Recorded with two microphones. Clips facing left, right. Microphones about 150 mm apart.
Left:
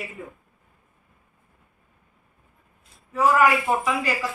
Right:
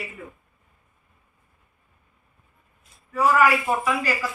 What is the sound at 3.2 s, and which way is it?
Speech, 20° left (ahead or behind).